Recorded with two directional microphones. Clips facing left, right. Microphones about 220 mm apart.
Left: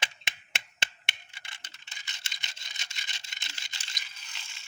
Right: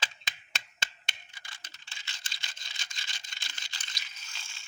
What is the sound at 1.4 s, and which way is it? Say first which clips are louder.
Computer keyboard: left 1 dB; 25° left (ahead or behind).